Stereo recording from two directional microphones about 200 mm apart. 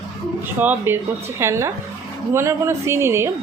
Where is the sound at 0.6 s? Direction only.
10° right (ahead or behind).